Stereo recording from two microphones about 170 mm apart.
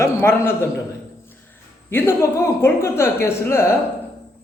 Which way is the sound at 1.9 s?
15° left (ahead or behind).